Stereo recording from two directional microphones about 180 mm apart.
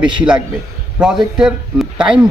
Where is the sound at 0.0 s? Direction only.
5° right (ahead or behind).